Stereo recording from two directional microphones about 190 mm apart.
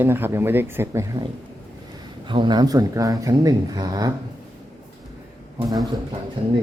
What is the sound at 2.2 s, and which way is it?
Speech, 25° right (ahead or behind).